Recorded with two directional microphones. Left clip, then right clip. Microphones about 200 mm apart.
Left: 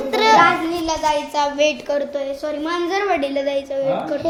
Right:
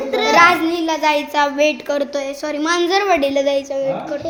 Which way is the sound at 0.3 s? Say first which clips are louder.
Right 2 dB; 45° right (ahead or behind).